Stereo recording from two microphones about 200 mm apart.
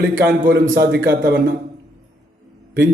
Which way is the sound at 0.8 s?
55° right (ahead or behind).